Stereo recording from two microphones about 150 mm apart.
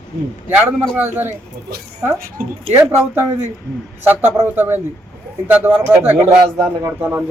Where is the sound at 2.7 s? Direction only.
15° right (ahead or behind).